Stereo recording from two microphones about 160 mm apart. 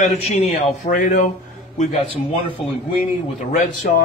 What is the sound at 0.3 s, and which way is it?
Speech, 45° left (ahead or behind).